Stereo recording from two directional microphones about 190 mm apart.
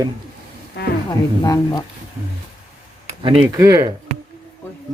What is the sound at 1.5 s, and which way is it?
Speech, 20° left (ahead or behind).